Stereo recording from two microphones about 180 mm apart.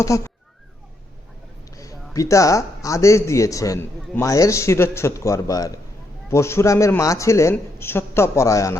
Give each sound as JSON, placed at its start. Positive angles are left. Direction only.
{"t": 0.0, "sound": "speech", "side_deg": 15}
{"t": 1.7, "sound": "speech", "side_deg": 20}